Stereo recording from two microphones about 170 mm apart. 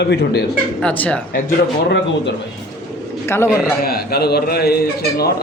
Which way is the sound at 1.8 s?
90° left.